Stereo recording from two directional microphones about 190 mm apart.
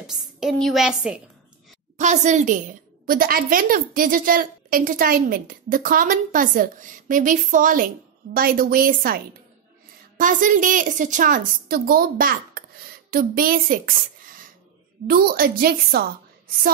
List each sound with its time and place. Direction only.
0.0 s a woman's voice: centre (ahead or behind)
2.0 s a woman's voice: 40° right (ahead or behind)